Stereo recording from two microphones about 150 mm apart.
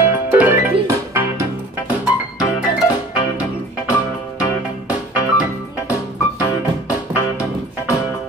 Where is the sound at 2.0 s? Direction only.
5° right (ahead or behind).